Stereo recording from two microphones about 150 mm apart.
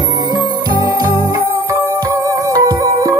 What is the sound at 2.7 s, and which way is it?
Music, 20° right (ahead or behind).